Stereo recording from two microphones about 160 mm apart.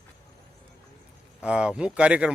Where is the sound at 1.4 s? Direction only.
5° right (ahead or behind).